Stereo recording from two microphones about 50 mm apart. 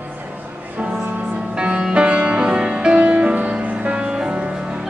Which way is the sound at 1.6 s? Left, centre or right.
Centre.